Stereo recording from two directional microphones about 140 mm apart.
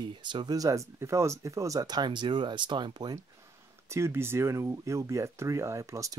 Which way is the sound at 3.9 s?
15° right (ahead or behind).